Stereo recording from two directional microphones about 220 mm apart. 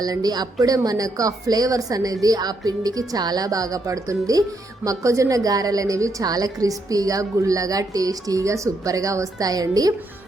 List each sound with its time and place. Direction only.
0.0 s speech: 15° right (ahead or behind)